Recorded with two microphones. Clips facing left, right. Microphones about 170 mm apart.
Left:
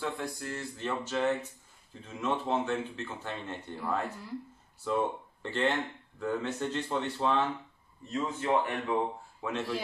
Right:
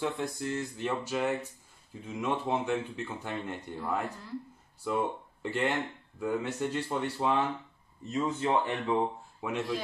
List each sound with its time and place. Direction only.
0.0 s speech: 20° right (ahead or behind)
8.1 s speech: 25° right (ahead or behind)
9.4 s speech: 15° right (ahead or behind)